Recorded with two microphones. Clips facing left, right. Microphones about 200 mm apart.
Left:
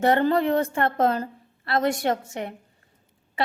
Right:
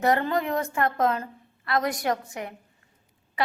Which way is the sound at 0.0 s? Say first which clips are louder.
Left 4 dB; 30° left (ahead or behind).